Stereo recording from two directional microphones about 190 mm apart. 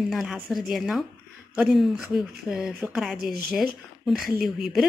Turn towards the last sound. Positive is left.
turn(degrees=0)  # may be behind; listen again after turning